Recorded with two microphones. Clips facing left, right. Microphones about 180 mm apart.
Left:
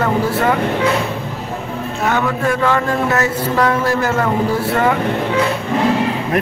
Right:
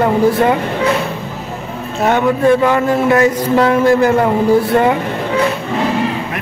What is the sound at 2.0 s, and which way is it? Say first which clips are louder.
Speech: right 6 dB; 20° right (ahead or behind).